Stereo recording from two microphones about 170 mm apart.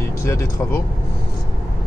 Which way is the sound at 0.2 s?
15° left (ahead or behind).